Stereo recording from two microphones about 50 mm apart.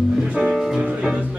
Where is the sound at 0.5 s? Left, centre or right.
Centre.